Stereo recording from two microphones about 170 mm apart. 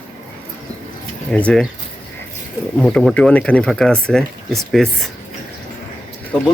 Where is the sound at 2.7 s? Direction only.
5° left (ahead or behind).